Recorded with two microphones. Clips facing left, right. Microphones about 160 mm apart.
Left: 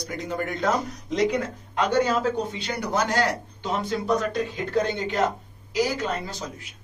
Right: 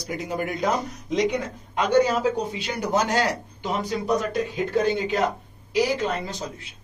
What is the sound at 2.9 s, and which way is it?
Speech, 20° right (ahead or behind).